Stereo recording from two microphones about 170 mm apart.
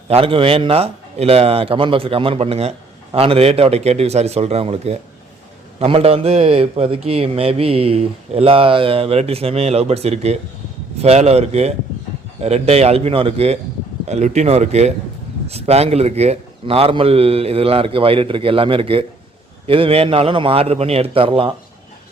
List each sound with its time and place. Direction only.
0.1 s a man's voice: 35° right (ahead or behind)